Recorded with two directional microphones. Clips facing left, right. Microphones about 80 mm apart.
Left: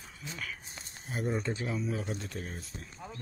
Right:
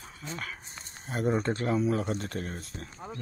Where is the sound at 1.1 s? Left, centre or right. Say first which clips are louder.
Right 5 dB; right.